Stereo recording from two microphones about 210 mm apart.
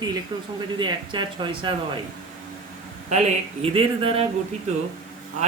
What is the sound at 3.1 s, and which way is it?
A man's voice, 30° right (ahead or behind).